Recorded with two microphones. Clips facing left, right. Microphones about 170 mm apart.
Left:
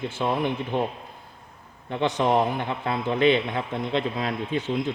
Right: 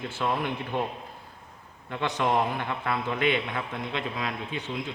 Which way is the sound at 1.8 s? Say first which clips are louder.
Left 4 dB; 25° left (ahead or behind).